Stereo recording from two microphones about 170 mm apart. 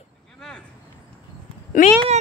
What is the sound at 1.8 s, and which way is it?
Speech, 55° left (ahead or behind).